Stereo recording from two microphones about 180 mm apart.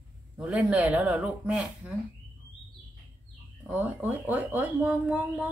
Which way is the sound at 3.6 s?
10° right (ahead or behind).